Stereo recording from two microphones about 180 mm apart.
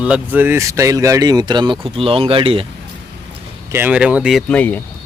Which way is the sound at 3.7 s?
10° right (ahead or behind).